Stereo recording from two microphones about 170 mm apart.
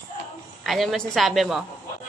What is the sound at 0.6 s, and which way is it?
Speech, centre (ahead or behind).